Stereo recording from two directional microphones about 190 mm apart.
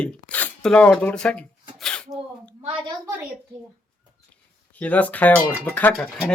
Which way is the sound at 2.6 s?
30° right (ahead or behind).